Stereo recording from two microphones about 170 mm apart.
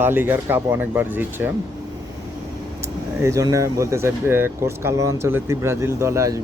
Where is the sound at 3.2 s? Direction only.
15° right (ahead or behind).